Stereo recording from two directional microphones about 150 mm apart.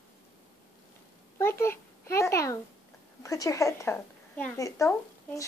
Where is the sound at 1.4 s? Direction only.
15° left (ahead or behind).